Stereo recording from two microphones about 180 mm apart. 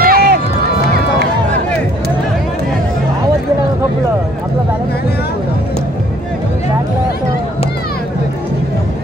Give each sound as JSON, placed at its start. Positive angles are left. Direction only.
{"t": 0.0, "sound": "run", "side_deg": -55}